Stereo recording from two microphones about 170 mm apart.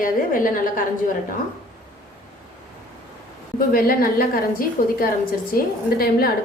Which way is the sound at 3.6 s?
60° left (ahead or behind).